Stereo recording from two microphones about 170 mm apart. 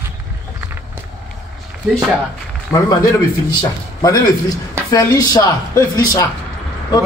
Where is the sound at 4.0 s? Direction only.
20° left (ahead or behind).